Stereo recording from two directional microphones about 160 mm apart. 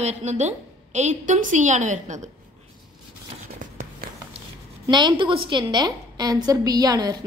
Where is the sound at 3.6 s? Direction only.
55° right (ahead or behind).